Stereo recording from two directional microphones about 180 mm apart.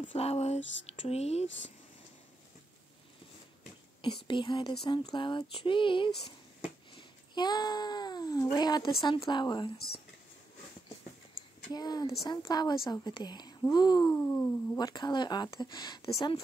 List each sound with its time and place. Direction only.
0.1 s speech: 35° left (ahead or behind)
0.6 s a sound: 90° left
0.8 s speech: 35° left (ahead or behind)
4.0 s a woman's voice: 25° left (ahead or behind)
7.3 s a woman's voice: 25° left (ahead or behind)
11.7 s a woman's voice: 20° left (ahead or behind)
14.8 s a woman's voice: 25° left (ahead or behind)